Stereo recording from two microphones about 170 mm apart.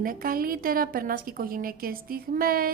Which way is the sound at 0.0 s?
55° right (ahead or behind).